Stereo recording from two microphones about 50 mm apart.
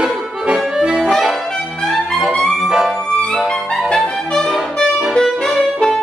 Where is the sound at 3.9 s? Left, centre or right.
Centre.